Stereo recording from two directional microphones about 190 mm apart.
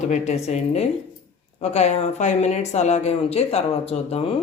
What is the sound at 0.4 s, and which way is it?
Speech, 35° left (ahead or behind).